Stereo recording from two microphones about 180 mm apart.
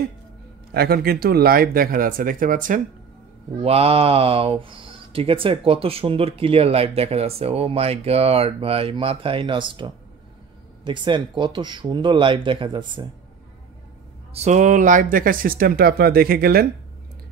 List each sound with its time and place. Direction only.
0.7 s speech: 60° right (ahead or behind)
3.6 s speech: 35° right (ahead or behind)
14.3 s speech: 40° right (ahead or behind); by 16.6 s 55° right (ahead or behind)